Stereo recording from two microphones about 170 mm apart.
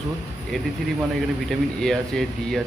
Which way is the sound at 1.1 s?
Centre (ahead or behind).